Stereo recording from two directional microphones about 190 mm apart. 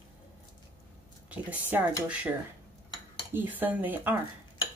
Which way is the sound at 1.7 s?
10° right (ahead or behind).